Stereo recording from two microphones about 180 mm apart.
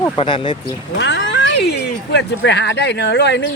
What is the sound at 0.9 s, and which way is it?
Speech, 80° left.